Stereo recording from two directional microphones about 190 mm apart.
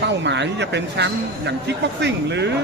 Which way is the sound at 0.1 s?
65° right (ahead or behind).